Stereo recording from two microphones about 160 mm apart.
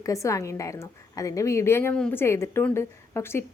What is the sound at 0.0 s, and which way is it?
A woman's voice, 20° left (ahead or behind).